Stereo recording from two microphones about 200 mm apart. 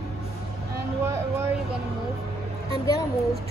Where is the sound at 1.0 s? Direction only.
10° right (ahead or behind).